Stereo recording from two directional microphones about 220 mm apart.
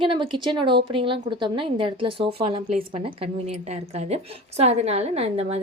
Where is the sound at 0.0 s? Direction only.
25° right (ahead or behind).